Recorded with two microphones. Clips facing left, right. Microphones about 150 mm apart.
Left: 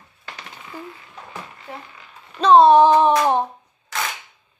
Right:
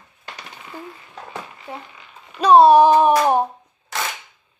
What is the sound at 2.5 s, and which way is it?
Speech, 20° left (ahead or behind).